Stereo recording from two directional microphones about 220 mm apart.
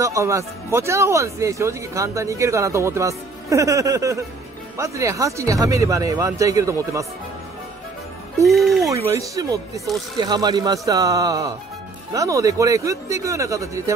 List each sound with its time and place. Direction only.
0.0 s speech: 15° right (ahead or behind)
8.5 s speech: centre (ahead or behind)
8.9 s speech: 15° right (ahead or behind)